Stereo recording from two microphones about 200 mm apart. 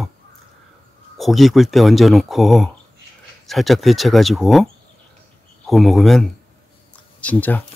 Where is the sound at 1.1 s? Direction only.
Centre (ahead or behind).